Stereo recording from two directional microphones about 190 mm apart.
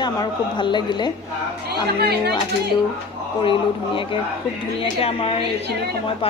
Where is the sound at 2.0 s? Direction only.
55° right (ahead or behind).